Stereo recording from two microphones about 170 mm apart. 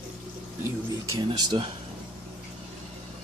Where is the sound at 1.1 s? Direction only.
25° right (ahead or behind).